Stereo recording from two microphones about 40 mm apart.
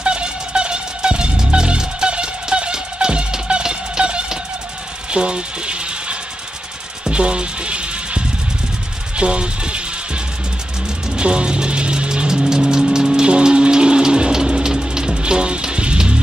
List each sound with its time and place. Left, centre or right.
0.0 s music: right
5.1 s a sound: right
7.1 s music: right